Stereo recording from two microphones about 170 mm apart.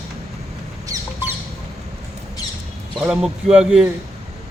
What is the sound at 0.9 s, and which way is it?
Squawk, 20° right (ahead or behind).